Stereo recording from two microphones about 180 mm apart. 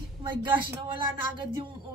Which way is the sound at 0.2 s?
25° right (ahead or behind).